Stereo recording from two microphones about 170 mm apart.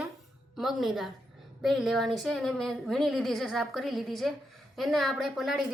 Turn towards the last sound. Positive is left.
turn(degrees=0)  # may be behind; listen again after turning